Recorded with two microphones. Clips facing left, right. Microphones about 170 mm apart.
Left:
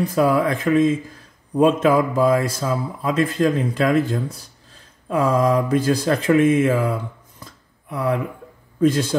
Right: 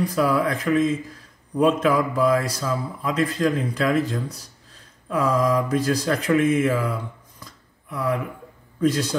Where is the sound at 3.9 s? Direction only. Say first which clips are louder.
Left 3 dB; 30° left (ahead or behind).